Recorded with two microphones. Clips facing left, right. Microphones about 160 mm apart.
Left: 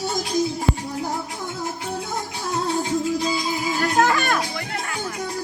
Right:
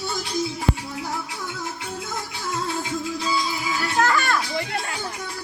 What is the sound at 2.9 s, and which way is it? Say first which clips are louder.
Music: left 4 dB; 45° left (ahead or behind).